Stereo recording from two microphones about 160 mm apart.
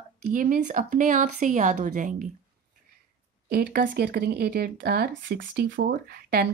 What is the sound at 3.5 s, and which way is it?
Speech, 65° right (ahead or behind).